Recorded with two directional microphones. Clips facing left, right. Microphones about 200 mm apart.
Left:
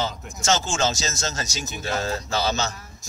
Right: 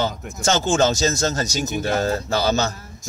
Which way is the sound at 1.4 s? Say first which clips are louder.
Right 7 dB; 60° right (ahead or behind).